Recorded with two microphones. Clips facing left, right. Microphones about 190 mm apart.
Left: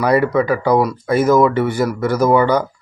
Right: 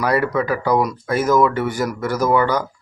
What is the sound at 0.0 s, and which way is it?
Speech, 5° left (ahead or behind).